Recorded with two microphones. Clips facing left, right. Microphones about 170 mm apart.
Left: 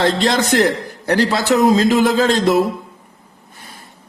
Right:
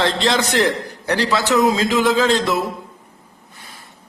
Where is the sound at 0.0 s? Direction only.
50° left (ahead or behind).